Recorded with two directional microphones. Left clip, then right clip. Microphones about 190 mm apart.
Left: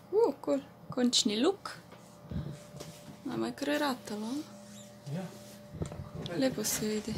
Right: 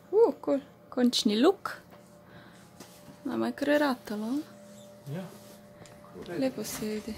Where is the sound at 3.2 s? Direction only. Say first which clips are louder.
Right 5 dB; 35° right (ahead or behind).